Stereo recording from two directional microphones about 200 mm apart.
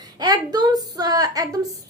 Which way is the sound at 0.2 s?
20° right (ahead or behind).